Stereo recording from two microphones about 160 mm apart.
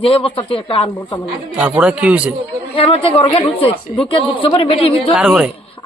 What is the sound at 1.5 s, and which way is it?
Speech, 5° right (ahead or behind).